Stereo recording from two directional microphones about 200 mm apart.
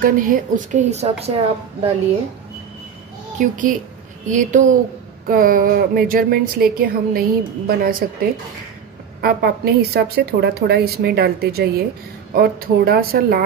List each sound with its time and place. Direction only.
0.0 s a woman's voice: 40° right (ahead or behind)
3.3 s a woman's voice: 40° right (ahead or behind)